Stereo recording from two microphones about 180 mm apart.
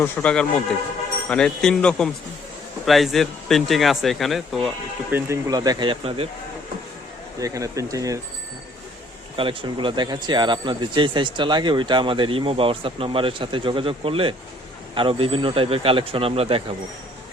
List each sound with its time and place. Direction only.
0.0 s speech: 5° left (ahead or behind)
5.1 s speech: 15° right (ahead or behind)
7.3 s speech: 20° right (ahead or behind)
9.3 s speech: 30° right (ahead or behind)